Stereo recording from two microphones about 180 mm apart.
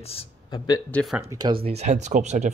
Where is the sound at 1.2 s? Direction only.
20° right (ahead or behind); by 2.5 s 40° right (ahead or behind).